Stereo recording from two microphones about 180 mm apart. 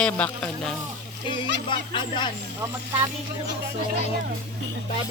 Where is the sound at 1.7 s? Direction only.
25° left (ahead or behind).